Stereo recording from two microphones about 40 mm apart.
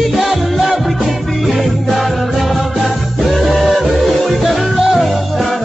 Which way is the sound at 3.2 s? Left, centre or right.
Centre.